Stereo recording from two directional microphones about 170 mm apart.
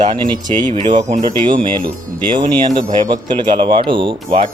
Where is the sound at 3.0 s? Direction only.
25° right (ahead or behind).